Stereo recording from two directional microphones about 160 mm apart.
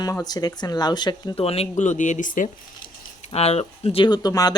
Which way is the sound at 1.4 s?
40° left (ahead or behind).